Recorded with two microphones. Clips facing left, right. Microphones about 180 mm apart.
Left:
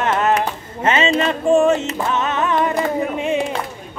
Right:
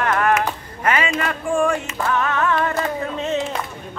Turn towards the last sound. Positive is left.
turn(degrees=15)  # may be behind; listen again after turning